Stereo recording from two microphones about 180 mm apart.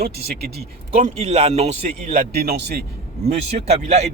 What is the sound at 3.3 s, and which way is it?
Speech, 35° right (ahead or behind).